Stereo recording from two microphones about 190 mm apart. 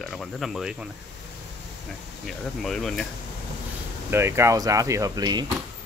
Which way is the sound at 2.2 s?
Centre (ahead or behind).